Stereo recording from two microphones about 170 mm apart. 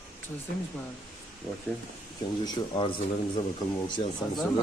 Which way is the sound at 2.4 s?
30° left (ahead or behind).